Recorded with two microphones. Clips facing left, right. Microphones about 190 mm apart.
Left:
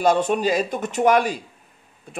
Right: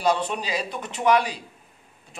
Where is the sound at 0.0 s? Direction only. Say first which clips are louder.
Left 6 dB; 50° left (ahead or behind).